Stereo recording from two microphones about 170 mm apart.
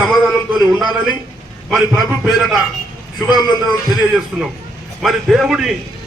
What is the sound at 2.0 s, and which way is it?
Speech, centre (ahead or behind).